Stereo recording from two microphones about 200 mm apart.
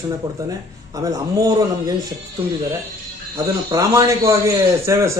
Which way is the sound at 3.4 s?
20° right (ahead or behind).